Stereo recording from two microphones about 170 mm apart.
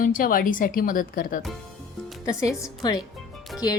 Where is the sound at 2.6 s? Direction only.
25° left (ahead or behind).